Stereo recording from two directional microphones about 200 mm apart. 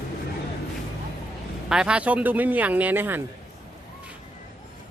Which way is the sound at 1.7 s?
5° right (ahead or behind).